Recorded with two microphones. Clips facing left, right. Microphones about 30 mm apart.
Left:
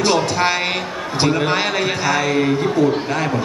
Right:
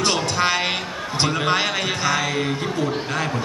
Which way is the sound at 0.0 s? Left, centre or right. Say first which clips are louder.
Left 4 dB; centre.